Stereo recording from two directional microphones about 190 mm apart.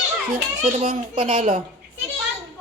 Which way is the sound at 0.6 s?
35° right (ahead or behind).